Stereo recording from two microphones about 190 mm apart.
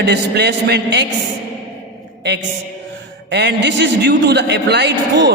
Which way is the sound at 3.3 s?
65° right (ahead or behind).